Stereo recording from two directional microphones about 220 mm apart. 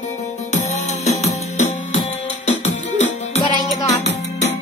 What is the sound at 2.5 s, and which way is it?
Music, 30° left (ahead or behind).